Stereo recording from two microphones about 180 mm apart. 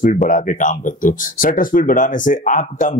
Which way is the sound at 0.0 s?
45° left (ahead or behind).